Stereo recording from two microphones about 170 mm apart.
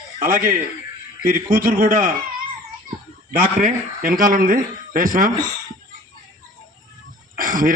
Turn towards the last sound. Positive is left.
turn(degrees=-55)  # may be behind; listen again after turning